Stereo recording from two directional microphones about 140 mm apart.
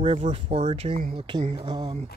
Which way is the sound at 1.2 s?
35° right (ahead or behind).